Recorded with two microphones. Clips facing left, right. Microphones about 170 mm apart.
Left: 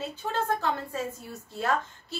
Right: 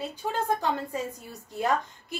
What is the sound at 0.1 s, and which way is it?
A woman's voice, 15° right (ahead or behind).